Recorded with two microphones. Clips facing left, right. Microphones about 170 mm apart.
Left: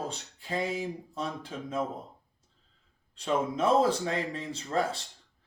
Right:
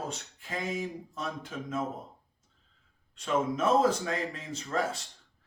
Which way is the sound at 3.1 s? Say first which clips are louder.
Even; 30° left (ahead or behind).